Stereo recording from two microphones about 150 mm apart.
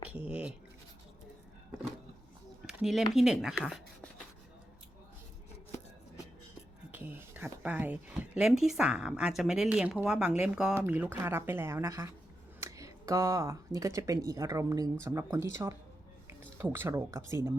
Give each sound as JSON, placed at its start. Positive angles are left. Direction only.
{"t": 0.3, "sound": "speech", "side_deg": -10}
{"t": 2.6, "sound": "speech", "side_deg": -5}
{"t": 3.6, "sound": "a sound", "side_deg": 0}
{"t": 6.9, "sound": "a woman's voice", "side_deg": -15}